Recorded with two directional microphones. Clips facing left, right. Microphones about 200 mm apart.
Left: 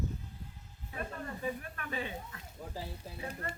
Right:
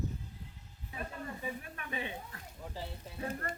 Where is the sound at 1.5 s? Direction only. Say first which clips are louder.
Left 3 dB; 15° right (ahead or behind).